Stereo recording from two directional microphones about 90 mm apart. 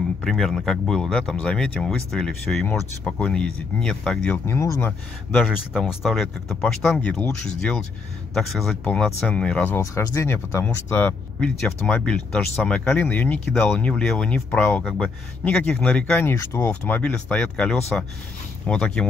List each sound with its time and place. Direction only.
0.0 s speech: 5° left (ahead or behind)
5.9 s speech: centre (ahead or behind)
6.6 s speech: 15° left (ahead or behind)
11.3 s speech: 10° left (ahead or behind)
14.8 s speech: centre (ahead or behind)
15.4 s speech: 15° left (ahead or behind)
16.8 s speech: 15° left (ahead or behind)